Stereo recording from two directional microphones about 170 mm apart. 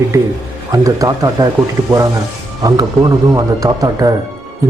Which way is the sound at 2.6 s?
20° right (ahead or behind).